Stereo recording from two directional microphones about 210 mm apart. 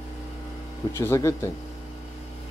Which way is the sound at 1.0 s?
10° left (ahead or behind).